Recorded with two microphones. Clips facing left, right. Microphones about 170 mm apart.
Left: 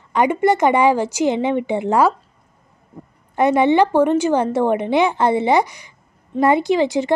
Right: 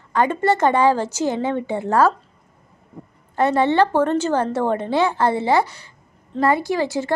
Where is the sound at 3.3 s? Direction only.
15° left (ahead or behind).